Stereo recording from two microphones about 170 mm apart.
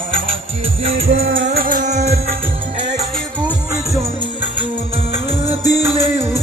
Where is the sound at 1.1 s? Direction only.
90° right; by 2.9 s 45° right (ahead or behind).